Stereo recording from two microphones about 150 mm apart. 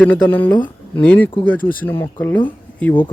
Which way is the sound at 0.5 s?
30° left (ahead or behind).